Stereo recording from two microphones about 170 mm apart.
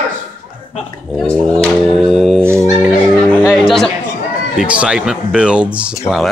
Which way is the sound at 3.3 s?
5° right (ahead or behind).